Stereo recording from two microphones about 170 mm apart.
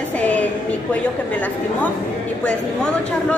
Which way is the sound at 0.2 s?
10° left (ahead or behind).